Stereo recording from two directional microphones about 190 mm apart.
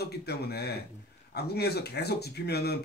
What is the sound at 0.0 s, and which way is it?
Speech, 60° left (ahead or behind).